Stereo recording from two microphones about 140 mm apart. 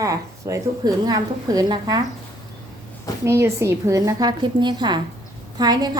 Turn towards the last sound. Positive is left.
turn(degrees=-30)  # may be behind; listen again after turning